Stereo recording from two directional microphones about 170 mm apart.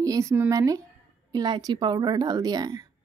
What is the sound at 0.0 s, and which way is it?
A woman's voice, 20° right (ahead or behind).